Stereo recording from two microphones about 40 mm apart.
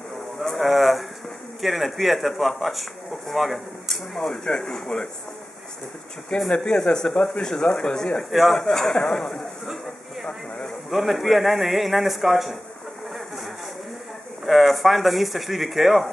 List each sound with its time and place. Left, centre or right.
0.6 s a sound: centre
1.6 s a man's voice: centre
4.3 s speech: left
4.7 s a man's voice: centre
6.5 s a man's voice: left
8.2 s a man's voice: centre
10.9 s a man's voice: centre
14.4 s a man's voice: centre